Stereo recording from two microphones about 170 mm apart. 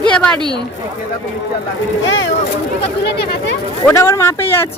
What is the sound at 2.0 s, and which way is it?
Speech, 90° left.